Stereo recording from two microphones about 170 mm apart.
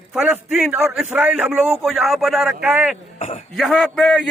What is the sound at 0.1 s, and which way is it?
A man's voice, 5° right (ahead or behind).